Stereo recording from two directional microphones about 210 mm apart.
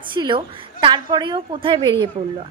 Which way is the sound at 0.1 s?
25° right (ahead or behind).